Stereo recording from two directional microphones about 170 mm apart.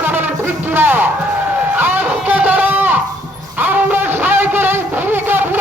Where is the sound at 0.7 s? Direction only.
10° right (ahead or behind).